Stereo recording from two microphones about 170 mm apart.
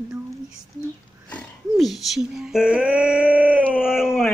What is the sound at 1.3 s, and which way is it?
Speech, 5° left (ahead or behind).